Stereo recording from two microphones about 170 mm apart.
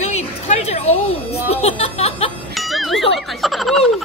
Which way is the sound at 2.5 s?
Centre (ahead or behind).